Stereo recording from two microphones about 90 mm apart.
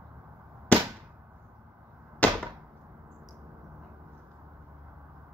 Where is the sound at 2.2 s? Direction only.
15° left (ahead or behind).